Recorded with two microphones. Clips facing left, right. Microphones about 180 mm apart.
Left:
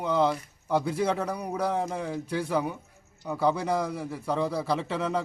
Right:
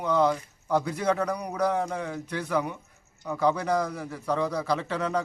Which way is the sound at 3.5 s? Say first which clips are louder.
Right 1 dB; 25° left (ahead or behind).